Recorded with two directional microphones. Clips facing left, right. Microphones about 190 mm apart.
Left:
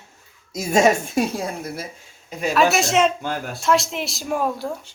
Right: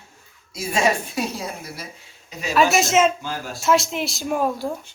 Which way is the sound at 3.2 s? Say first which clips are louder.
Left 3 dB; 55° left (ahead or behind).